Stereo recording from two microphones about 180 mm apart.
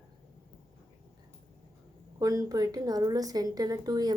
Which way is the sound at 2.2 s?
20° right (ahead or behind).